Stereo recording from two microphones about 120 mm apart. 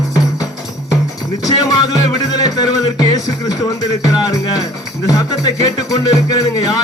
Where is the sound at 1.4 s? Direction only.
30° left (ahead or behind).